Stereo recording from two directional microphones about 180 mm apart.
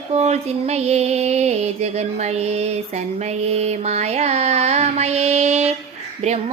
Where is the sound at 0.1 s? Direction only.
35° right (ahead or behind).